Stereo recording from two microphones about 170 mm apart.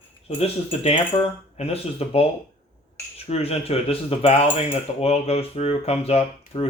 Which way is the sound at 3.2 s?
40° left (ahead or behind).